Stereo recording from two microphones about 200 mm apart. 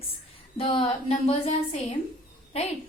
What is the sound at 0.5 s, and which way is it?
A woman's voice, 25° left (ahead or behind).